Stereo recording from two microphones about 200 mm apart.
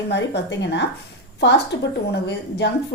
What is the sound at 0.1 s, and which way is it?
A woman's voice, 60° left (ahead or behind).